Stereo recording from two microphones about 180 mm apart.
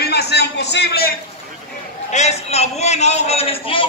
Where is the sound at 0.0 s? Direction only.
65° left (ahead or behind).